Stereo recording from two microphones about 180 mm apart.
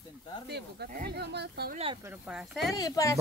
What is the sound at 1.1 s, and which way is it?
Speech, 65° right (ahead or behind).